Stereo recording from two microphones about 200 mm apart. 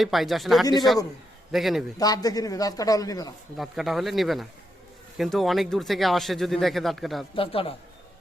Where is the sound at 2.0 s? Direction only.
20° left (ahead or behind).